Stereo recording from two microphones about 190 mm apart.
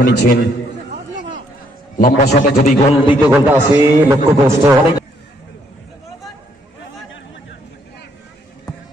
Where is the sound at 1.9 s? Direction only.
40° left (ahead or behind).